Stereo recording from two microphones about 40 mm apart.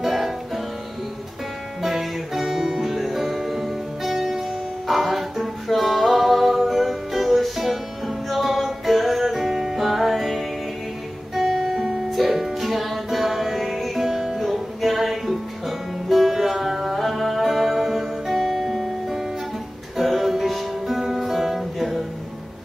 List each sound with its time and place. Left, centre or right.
0.0 s music: centre
1.8 s music: centre
11.3 s guitar: centre
12.1 s music: centre